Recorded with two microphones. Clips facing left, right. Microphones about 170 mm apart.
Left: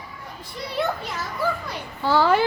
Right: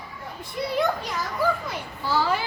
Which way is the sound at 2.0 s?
60° left (ahead or behind).